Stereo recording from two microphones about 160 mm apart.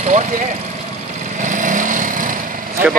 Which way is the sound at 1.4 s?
55° right (ahead or behind).